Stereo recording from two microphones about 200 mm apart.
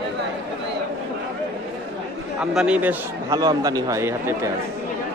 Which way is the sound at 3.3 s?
20° right (ahead or behind).